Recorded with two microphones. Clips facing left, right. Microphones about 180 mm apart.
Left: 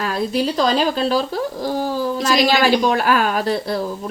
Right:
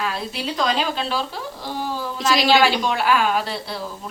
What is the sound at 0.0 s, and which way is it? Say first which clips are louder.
A woman's voice: left 7 dB; 40° left (ahead or behind).